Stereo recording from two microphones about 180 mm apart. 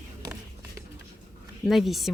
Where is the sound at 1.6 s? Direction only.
Centre (ahead or behind).